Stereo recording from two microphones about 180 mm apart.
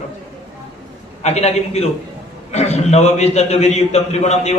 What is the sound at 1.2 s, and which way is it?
A man's voice, 35° left (ahead or behind).